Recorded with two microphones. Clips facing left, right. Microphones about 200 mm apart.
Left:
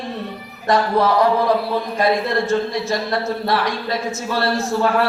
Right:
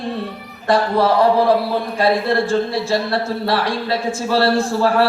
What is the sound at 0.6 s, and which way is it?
Speech, 30° right (ahead or behind).